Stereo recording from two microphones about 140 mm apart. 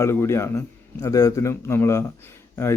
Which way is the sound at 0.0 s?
20° left (ahead or behind).